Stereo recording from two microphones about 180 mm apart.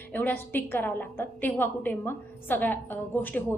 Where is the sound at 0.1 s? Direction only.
10° left (ahead or behind).